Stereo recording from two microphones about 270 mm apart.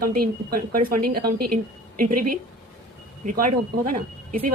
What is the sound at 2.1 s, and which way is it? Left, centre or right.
Speech, right.